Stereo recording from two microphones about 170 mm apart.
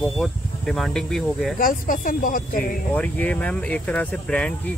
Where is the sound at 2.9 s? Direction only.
10° left (ahead or behind).